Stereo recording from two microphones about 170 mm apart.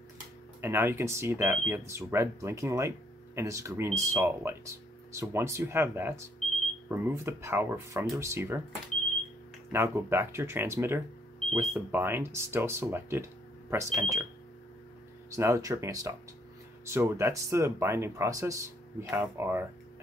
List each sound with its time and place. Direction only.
0.6 s speech: 15° right (ahead or behind)
9.7 s speech: 15° right (ahead or behind)
15.3 s speech: 20° right (ahead or behind)